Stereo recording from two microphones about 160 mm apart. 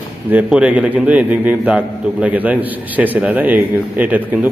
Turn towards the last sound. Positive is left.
turn(degrees=-10)  # may be behind; listen again after turning